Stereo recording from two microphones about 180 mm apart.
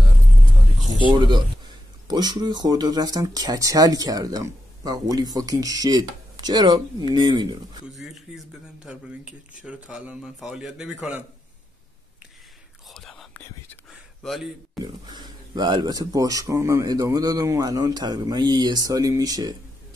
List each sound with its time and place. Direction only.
1.0 s speech: 25° right (ahead or behind)
7.9 s a man's voice: centre (ahead or behind)
12.9 s whispering: centre (ahead or behind)
14.2 s a man's voice: centre (ahead or behind)
15.0 s speech: 20° right (ahead or behind)